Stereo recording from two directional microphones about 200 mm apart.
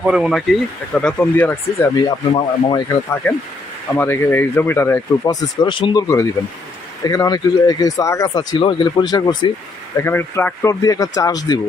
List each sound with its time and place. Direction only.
0.0 s speech: 5° right (ahead or behind)
2.0 s speech: 20° left (ahead or behind)